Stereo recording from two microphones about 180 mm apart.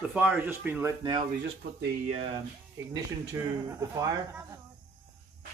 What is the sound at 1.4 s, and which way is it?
Speech, 65° right (ahead or behind).